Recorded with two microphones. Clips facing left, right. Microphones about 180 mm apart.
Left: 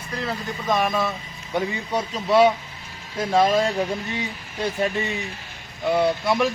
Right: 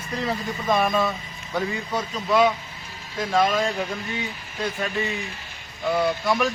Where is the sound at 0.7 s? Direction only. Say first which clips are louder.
Right 1 dB; 5° left (ahead or behind).